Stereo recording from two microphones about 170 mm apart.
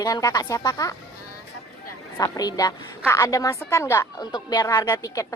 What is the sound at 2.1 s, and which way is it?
A woman's voice, 20° left (ahead or behind).